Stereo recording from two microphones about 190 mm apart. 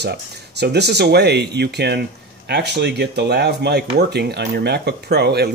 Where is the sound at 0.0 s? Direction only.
60° right (ahead or behind).